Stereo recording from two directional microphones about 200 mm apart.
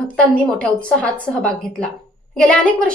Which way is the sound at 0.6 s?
5° left (ahead or behind).